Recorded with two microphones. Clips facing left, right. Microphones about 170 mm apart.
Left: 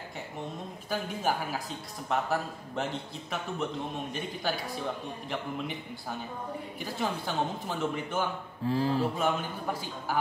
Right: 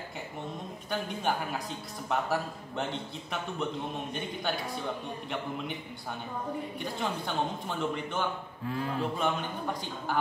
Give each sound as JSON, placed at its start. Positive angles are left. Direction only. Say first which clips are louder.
{"t": 0.8, "sound": "a man's voice", "louder": "left 1 dB", "side_deg": 5}
{"t": 6.8, "sound": "a man's voice", "louder": "left 5 dB", "side_deg": 5}
{"t": 8.6, "sound": "a sound", "louder": "left 5 dB", "side_deg": 30}
{"t": 9.0, "sound": "a man's voice", "louder": "left 1 dB", "side_deg": 5}